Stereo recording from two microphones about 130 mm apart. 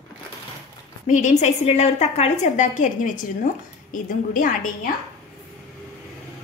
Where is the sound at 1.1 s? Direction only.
70° left (ahead or behind); by 4.9 s 90° left.